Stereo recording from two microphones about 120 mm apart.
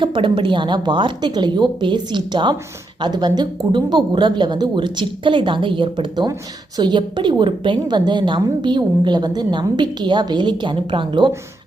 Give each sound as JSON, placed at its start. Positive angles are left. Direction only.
{"t": 0.0, "sound": "a woman's voice", "side_deg": -40}